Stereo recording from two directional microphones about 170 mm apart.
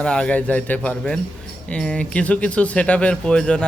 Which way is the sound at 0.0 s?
5° left (ahead or behind).